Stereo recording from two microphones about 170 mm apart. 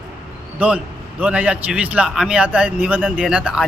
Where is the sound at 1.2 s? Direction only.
10° right (ahead or behind).